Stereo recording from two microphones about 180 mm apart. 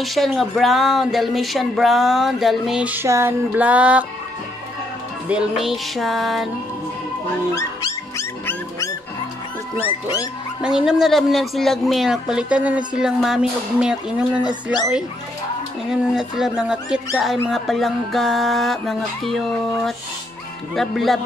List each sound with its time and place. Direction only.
0.0 s speech: centre (ahead or behind)
5.3 s speech: 5° right (ahead or behind)
8.2 s dog: 15° left (ahead or behind)
10.6 s speech: 5° right (ahead or behind)
15.9 s speech: 5° right (ahead or behind)